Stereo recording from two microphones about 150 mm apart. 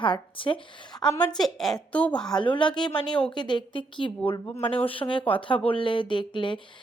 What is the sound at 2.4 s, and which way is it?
Speech, 35° left (ahead or behind).